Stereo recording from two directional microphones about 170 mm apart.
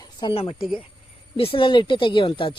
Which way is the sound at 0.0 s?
25° left (ahead or behind).